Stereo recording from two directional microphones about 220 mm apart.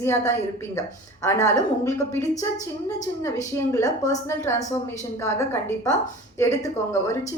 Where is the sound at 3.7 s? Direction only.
15° left (ahead or behind).